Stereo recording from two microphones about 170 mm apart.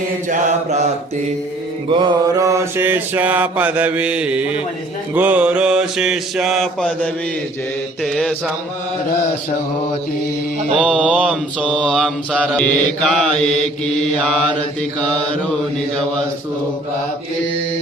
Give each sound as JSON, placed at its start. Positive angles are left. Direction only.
{"t": 0.3, "sound": "mantra", "side_deg": -45}
{"t": 1.9, "sound": "mantra", "side_deg": -25}
{"t": 10.8, "sound": "mantra", "side_deg": 0}